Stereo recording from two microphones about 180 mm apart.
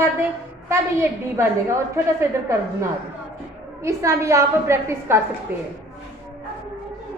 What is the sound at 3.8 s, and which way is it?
A woman's voice, 15° right (ahead or behind).